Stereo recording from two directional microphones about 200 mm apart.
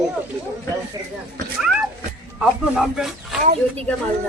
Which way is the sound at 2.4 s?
Centre (ahead or behind).